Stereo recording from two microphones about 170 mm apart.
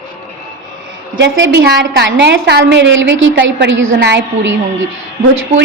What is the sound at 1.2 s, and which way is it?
A woman's voice, 90° right.